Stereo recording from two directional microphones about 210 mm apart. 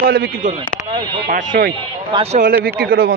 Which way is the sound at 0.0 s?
45° right (ahead or behind).